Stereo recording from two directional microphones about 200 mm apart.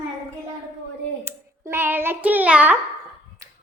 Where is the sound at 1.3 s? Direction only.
10° right (ahead or behind).